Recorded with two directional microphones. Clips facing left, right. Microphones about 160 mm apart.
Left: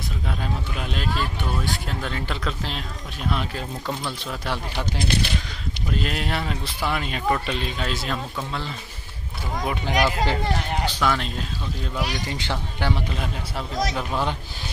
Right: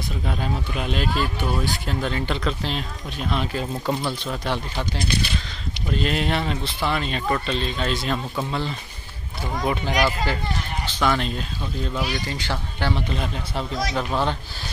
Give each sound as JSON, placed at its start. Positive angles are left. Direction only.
{"t": 0.3, "sound": "speech", "side_deg": 0}
{"t": 5.9, "sound": "speech", "side_deg": 0}
{"t": 9.8, "sound": "speech", "side_deg": 15}
{"t": 11.0, "sound": "speech", "side_deg": 0}
{"t": 12.3, "sound": "speech", "side_deg": 15}